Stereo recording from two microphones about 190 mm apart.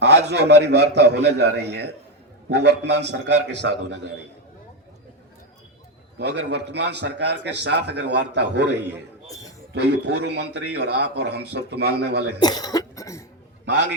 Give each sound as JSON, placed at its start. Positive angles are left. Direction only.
{"t": 0.0, "sound": "a man's voice", "side_deg": -65}
{"t": 6.1, "sound": "a man's voice", "side_deg": -60}
{"t": 9.7, "sound": "a man's voice", "side_deg": -60}
{"t": 12.4, "sound": "cough", "side_deg": 20}
{"t": 13.7, "sound": "a man's voice", "side_deg": -65}